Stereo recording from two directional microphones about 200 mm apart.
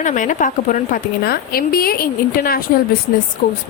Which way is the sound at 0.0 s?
40° left (ahead or behind).